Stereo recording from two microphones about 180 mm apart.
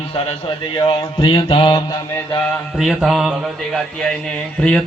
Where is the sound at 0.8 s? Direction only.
30° left (ahead or behind).